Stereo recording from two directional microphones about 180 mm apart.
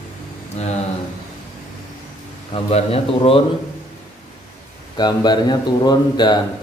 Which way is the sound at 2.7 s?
35° left (ahead or behind).